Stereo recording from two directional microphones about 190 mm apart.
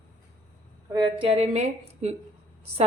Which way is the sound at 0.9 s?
25° right (ahead or behind).